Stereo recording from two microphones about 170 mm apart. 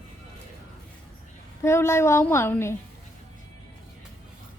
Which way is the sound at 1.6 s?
15° left (ahead or behind).